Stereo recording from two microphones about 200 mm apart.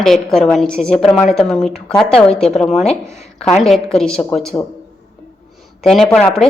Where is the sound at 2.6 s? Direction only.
35° left (ahead or behind).